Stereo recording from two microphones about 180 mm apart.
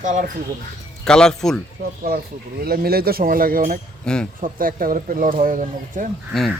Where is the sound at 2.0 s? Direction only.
55° right (ahead or behind).